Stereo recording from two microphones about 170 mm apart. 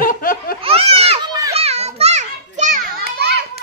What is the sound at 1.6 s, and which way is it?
Children playing, 40° right (ahead or behind).